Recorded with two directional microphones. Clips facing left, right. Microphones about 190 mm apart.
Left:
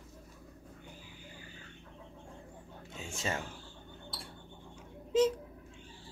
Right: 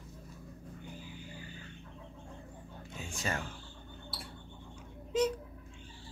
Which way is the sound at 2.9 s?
25° left (ahead or behind).